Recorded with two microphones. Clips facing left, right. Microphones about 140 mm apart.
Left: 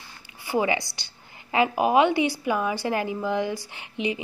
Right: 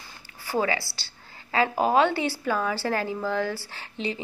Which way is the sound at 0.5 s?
15° left (ahead or behind).